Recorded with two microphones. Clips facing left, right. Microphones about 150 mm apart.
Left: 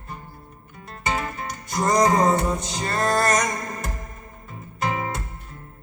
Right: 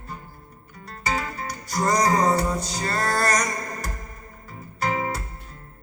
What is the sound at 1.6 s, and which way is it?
Music, 25° left (ahead or behind).